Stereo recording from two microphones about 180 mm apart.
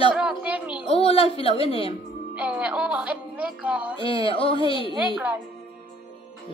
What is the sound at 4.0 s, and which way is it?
Female singing, 30° left (ahead or behind).